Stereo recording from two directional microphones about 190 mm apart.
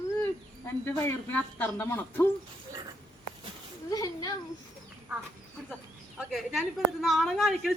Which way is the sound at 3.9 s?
20° left (ahead or behind).